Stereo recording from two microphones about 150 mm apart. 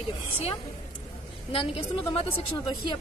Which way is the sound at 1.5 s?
40° left (ahead or behind).